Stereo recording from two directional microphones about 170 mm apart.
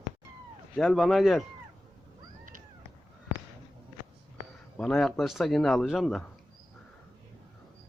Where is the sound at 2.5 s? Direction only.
50° right (ahead or behind).